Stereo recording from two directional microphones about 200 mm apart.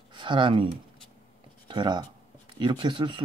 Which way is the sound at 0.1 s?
25° right (ahead or behind).